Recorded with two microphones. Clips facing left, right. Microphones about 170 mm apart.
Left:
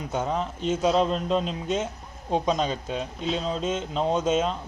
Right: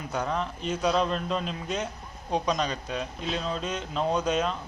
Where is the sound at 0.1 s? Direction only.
25° left (ahead or behind).